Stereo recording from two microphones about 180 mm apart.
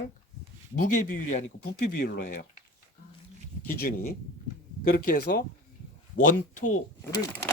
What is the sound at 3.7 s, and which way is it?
Speech, 55° left (ahead or behind).